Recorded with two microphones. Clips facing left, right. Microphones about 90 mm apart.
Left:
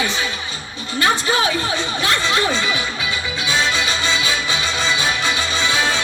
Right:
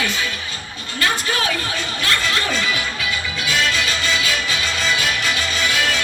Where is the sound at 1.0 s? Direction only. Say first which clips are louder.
Left 3 dB; 20° left (ahead or behind).